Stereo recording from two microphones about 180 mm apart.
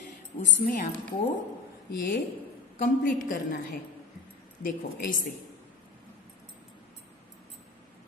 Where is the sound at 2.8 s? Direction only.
50° left (ahead or behind).